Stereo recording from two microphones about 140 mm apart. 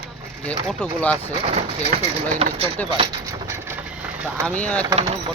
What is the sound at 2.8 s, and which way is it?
Speech, 10° left (ahead or behind).